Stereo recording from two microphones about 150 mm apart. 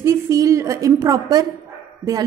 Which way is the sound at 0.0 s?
20° right (ahead or behind).